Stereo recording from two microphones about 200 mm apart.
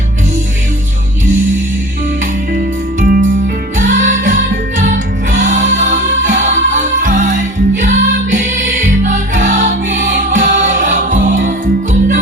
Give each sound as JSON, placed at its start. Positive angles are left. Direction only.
{"t": 3.0, "sound": "music", "side_deg": -45}